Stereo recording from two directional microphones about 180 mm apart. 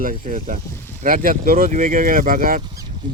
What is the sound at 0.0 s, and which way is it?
Speech, 50° right (ahead or behind).